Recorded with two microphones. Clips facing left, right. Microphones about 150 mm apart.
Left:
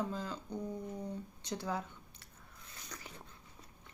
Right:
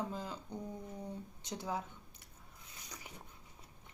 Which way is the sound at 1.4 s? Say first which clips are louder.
Left 1 dB; 20° right (ahead or behind).